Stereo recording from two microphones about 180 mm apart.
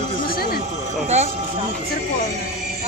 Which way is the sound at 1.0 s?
40° right (ahead or behind).